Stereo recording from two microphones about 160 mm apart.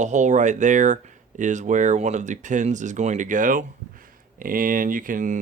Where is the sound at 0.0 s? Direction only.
50° right (ahead or behind).